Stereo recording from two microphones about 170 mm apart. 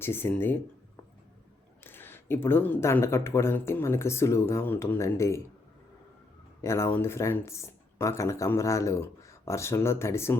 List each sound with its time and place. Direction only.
0.0 s speech: 15° left (ahead or behind)
1.8 s speech: 10° left (ahead or behind)
6.6 s speech: 15° left (ahead or behind)